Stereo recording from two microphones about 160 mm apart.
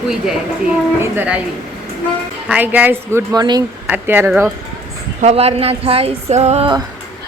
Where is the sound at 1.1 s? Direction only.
10° right (ahead or behind).